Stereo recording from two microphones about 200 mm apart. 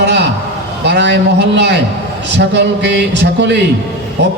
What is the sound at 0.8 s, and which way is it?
A man's voice, 60° right (ahead or behind).